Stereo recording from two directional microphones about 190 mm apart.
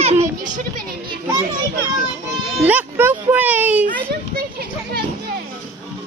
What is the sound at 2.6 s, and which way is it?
Speech, 10° right (ahead or behind).